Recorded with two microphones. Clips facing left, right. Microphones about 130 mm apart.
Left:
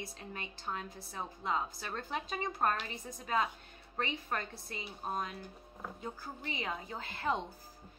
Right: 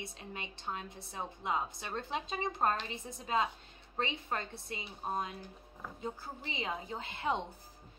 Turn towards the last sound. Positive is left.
turn(degrees=-25)  # may be behind; listen again after turning